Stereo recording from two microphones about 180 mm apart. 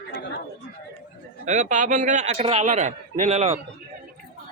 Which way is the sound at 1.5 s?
45° right (ahead or behind).